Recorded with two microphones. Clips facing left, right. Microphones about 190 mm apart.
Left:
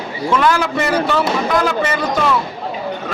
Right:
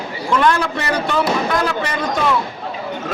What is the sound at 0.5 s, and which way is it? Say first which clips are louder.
A man's voice: left 3 dB; centre (ahead or behind).